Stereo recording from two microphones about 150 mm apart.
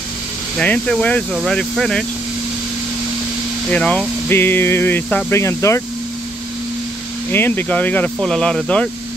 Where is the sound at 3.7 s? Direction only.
10° left (ahead or behind).